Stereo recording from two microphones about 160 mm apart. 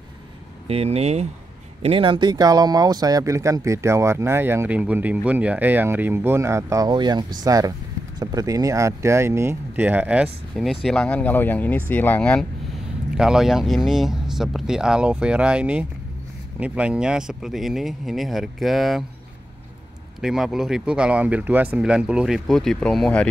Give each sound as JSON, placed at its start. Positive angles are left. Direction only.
{"t": 0.7, "sound": "speech", "side_deg": -40}
{"t": 20.2, "sound": "speech", "side_deg": 0}